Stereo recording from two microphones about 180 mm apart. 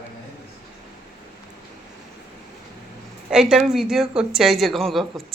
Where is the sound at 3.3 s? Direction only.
5° right (ahead or behind).